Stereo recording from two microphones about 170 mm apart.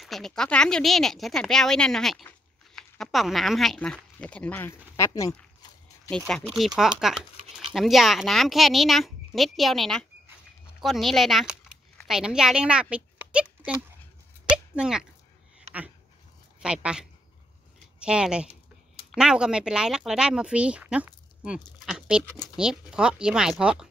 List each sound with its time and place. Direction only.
0.0 s speech: centre (ahead or behind)
4.9 s a sound: 20° left (ahead or behind)
6.0 s speech: 5° left (ahead or behind)
14.8 s speech: 5° right (ahead or behind)
16.6 s speech: 5° right (ahead or behind)
21.8 s goat: 5° right (ahead or behind)
22.6 s speech: 5° right (ahead or behind)